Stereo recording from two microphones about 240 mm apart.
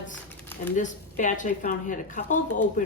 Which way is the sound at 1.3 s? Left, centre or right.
Left.